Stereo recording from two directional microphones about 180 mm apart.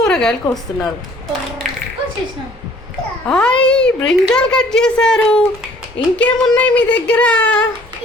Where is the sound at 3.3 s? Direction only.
5° left (ahead or behind).